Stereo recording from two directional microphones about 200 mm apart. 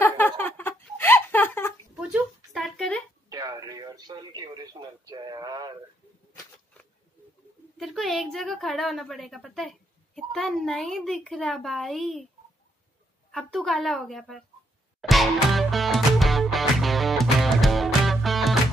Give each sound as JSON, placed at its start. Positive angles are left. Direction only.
{"t": 0.4, "sound": "a sound", "side_deg": 10}
{"t": 3.3, "sound": "radio", "side_deg": -15}
{"t": 7.7, "sound": "a woman's voice", "side_deg": 0}
{"t": 13.3, "sound": "a woman's voice", "side_deg": 0}
{"t": 15.0, "sound": "music", "side_deg": 0}